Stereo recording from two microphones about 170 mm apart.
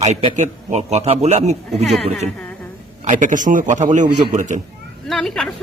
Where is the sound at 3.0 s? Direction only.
50° right (ahead or behind).